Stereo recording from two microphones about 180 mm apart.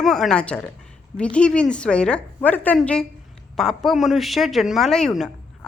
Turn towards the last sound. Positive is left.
turn(degrees=5)  # may be behind; listen again after turning